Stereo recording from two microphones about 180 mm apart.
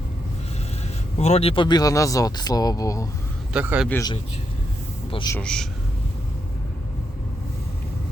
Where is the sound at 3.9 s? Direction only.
20° left (ahead or behind).